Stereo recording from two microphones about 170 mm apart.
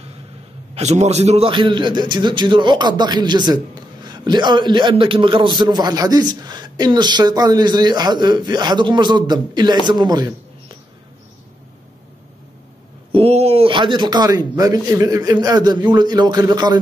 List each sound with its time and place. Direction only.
0.7 s a man's voice: 40° right (ahead or behind); by 10.3 s 25° right (ahead or behind)
13.1 s a man's voice: 35° right (ahead or behind)